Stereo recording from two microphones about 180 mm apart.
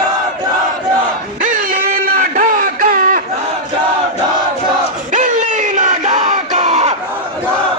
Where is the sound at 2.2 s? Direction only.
50° right (ahead or behind).